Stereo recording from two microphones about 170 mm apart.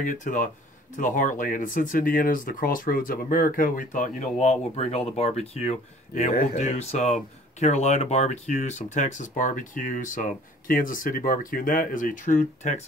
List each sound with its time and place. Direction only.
0.0 s speech: 50° left (ahead or behind)